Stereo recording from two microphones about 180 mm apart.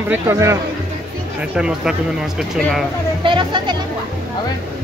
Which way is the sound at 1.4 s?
5° right (ahead or behind).